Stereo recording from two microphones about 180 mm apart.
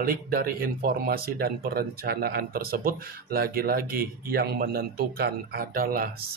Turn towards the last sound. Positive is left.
turn(degrees=-55)  # may be behind; listen again after turning